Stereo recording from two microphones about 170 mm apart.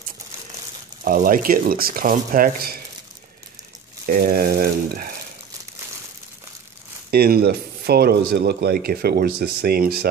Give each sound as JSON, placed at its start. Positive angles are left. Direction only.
{"t": 1.0, "sound": "speech", "side_deg": -55}
{"t": 4.0, "sound": "speech", "side_deg": -60}
{"t": 7.1, "sound": "speech", "side_deg": -65}